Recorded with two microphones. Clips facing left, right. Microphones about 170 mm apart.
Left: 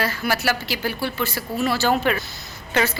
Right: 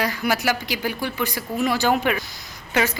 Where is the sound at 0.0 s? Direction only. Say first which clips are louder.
Right 1 dB; 15° right (ahead or behind).